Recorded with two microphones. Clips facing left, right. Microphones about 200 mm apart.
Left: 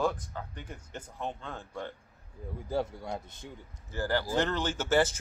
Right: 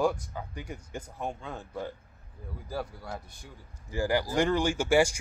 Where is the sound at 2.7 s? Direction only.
20° left (ahead or behind).